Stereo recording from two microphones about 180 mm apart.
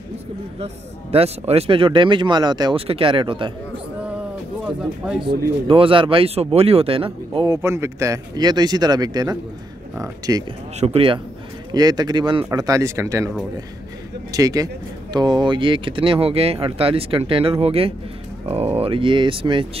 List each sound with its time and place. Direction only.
1.1 s speech: 35° right (ahead or behind)
4.6 s speech: 5° right (ahead or behind)
5.3 s speech: 30° right (ahead or behind)
10.8 s speech: 30° right (ahead or behind)
11.7 s speech: 20° right (ahead or behind)
14.3 s speech: 20° right (ahead or behind)